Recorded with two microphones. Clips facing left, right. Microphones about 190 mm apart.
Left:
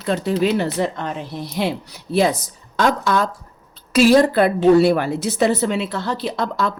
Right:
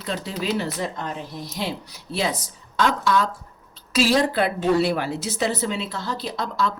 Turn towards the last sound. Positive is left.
turn(degrees=65)  # may be behind; listen again after turning